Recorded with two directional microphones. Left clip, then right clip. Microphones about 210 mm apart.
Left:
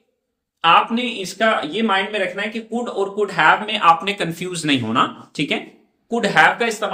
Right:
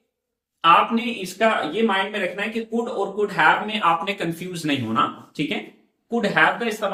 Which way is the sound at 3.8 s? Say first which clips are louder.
Left 5 dB; 60° left (ahead or behind).